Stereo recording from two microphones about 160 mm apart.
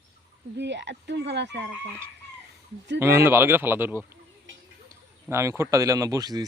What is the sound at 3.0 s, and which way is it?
Speech, 15° right (ahead or behind).